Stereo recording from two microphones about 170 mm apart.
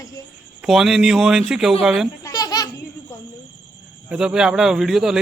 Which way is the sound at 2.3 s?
20° left (ahead or behind).